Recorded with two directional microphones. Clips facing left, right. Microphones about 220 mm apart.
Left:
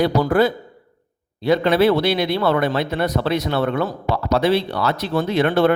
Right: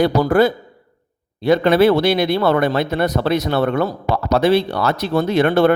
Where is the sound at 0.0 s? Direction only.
45° right (ahead or behind).